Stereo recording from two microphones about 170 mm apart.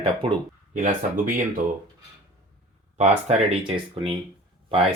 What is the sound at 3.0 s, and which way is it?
Speech, 35° right (ahead or behind).